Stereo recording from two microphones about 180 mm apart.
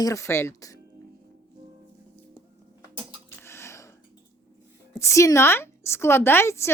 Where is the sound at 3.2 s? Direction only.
15° left (ahead or behind).